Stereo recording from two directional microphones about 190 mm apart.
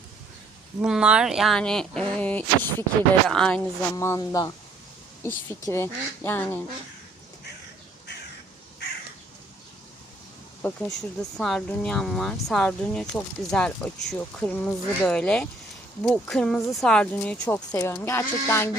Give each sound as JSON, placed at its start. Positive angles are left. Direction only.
{"t": 0.8, "sound": "speech", "side_deg": -5}
{"t": 3.9, "sound": "speech", "side_deg": 15}
{"t": 10.6, "sound": "speech", "side_deg": 5}